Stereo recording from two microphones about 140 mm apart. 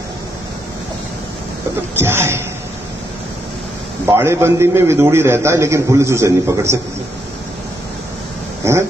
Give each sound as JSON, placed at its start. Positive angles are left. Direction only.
{"t": 2.0, "sound": "speech", "side_deg": -15}
{"t": 4.0, "sound": "a man's voice", "side_deg": -20}